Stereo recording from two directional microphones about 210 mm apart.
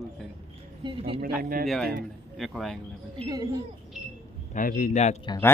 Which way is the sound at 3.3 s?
20° right (ahead or behind).